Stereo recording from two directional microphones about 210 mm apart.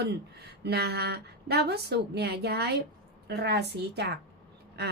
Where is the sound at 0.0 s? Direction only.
50° right (ahead or behind).